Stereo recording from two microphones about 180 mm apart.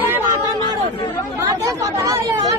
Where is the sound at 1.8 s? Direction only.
20° right (ahead or behind).